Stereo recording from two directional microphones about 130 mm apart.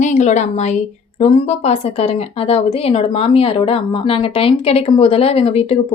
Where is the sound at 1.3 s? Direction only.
50° left (ahead or behind).